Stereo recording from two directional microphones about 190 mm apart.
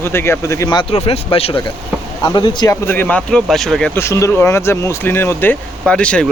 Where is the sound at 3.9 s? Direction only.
15° left (ahead or behind).